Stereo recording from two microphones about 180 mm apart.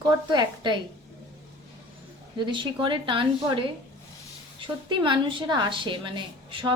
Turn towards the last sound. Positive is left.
turn(degrees=-30)  # may be behind; listen again after turning